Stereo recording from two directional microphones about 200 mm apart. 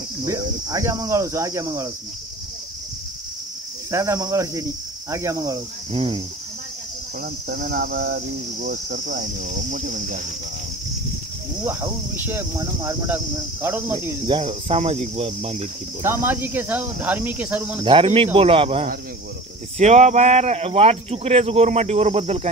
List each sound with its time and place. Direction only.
0.3 s speech: 15° right (ahead or behind)
3.9 s speech: 15° right (ahead or behind)
7.4 s cricket: 45° right (ahead or behind)
11.6 s speech: 10° right (ahead or behind)
14.2 s speech: 25° right (ahead or behind)
14.5 s speech: 35° right (ahead or behind)
16.0 s speech: 10° right (ahead or behind)
17.8 s speech: 25° right (ahead or behind)